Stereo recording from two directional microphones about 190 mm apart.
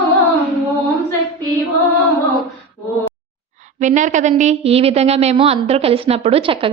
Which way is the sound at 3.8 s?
40° right (ahead or behind).